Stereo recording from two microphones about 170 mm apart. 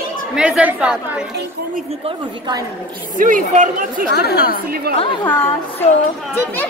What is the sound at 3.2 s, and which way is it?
Speech, 50° right (ahead or behind).